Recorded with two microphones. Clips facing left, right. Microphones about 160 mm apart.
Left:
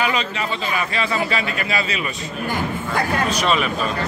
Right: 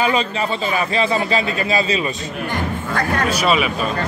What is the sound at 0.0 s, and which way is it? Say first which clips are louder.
A man's voice: right 4 dB; 30° right (ahead or behind).